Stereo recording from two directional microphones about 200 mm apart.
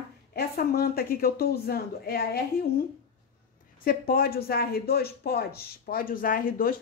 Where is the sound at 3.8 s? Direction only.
50° left (ahead or behind).